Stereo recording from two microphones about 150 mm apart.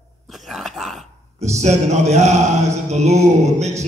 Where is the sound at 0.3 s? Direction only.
Centre (ahead or behind).